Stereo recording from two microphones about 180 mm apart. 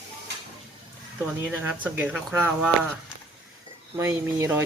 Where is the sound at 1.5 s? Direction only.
10° right (ahead or behind).